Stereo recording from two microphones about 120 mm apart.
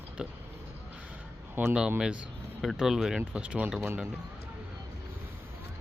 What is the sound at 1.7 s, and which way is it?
Speech, 5° right (ahead or behind).